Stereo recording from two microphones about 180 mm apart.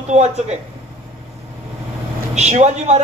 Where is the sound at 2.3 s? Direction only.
40° right (ahead or behind).